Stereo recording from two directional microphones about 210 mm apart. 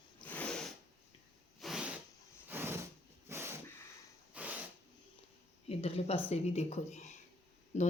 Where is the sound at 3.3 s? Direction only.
10° right (ahead or behind).